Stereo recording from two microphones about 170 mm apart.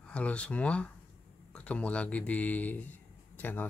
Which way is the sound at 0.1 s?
5° left (ahead or behind).